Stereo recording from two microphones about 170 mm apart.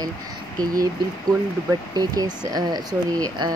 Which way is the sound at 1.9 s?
20° right (ahead or behind).